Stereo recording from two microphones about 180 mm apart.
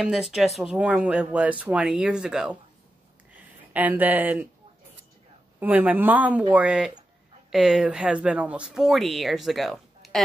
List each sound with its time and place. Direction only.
0.0 s speech: centre (ahead or behind)
5.6 s a woman's voice: 10° right (ahead or behind)